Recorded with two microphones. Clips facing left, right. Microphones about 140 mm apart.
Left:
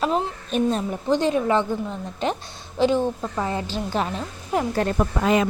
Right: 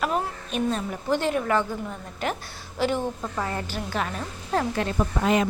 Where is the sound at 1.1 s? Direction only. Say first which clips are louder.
Left 3 dB; 20° left (ahead or behind).